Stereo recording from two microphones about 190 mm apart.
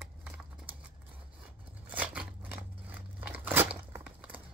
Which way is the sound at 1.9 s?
5° right (ahead or behind).